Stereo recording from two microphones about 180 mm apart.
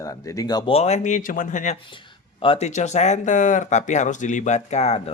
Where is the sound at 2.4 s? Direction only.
35° left (ahead or behind).